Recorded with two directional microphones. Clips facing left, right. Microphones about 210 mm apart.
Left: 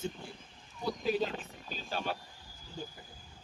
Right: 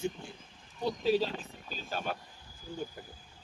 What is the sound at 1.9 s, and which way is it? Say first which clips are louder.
Speech: even; 50° right (ahead or behind).